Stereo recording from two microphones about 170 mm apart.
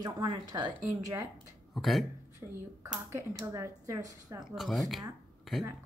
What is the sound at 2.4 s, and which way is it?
A woman's voice, 20° right (ahead or behind).